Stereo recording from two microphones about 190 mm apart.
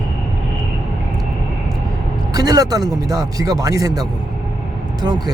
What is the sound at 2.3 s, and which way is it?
Speech, 20° right (ahead or behind).